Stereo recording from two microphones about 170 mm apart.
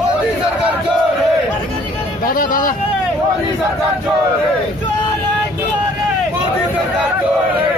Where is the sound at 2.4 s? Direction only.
55° left (ahead or behind).